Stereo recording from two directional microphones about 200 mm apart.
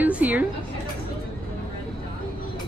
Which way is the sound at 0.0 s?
10° right (ahead or behind).